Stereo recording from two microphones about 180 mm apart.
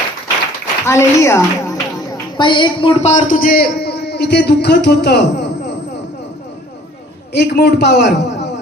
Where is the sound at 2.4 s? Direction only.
25° left (ahead or behind); by 5.2 s 65° left (ahead or behind).